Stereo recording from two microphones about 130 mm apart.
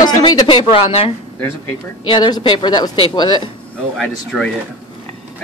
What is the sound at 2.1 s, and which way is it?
A woman's voice, 40° left (ahead or behind).